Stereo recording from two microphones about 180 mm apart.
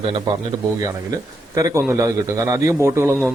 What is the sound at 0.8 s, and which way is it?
A man's voice, 20° right (ahead or behind).